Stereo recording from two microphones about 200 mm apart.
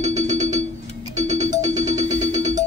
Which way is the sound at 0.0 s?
35° right (ahead or behind).